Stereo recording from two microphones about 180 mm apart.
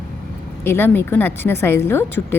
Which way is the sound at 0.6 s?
10° left (ahead or behind).